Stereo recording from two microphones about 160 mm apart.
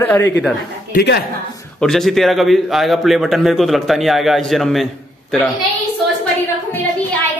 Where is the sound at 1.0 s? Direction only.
80° left.